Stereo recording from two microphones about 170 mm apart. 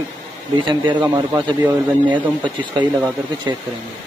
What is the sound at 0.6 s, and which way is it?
Speech, 30° right (ahead or behind).